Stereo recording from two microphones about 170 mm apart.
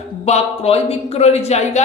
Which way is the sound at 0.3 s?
35° left (ahead or behind).